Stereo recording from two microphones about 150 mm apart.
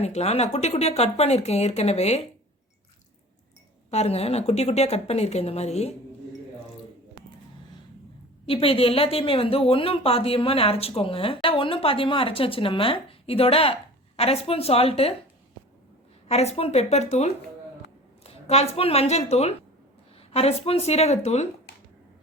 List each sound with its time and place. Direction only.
0.0 s speech: 45° left (ahead or behind)
3.9 s speech: 45° left (ahead or behind)
8.4 s a woman's voice: 40° left (ahead or behind)
16.3 s a woman's voice: 45° left (ahead or behind)